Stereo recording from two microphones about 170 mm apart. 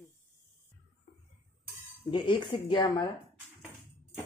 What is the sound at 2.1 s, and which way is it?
Speech, 30° left (ahead or behind).